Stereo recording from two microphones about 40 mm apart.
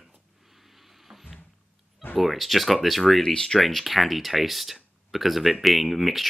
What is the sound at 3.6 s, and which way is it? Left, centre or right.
Speech, centre.